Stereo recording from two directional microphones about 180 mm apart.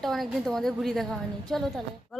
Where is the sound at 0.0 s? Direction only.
Centre (ahead or behind).